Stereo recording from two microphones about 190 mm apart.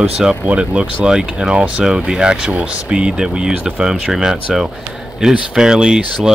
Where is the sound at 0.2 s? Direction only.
5° right (ahead or behind).